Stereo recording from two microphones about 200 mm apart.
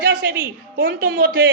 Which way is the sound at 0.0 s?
45° right (ahead or behind).